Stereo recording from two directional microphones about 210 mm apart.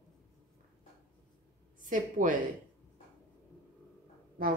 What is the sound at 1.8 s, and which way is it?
Speech, 40° right (ahead or behind).